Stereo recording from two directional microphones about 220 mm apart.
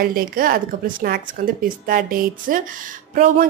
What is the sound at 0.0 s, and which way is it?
Speech, 40° right (ahead or behind).